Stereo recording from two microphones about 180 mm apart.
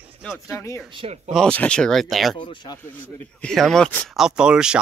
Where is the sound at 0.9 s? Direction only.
35° right (ahead or behind).